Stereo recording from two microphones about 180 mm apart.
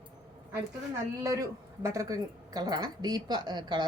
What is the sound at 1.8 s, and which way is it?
A woman's voice, 20° right (ahead or behind).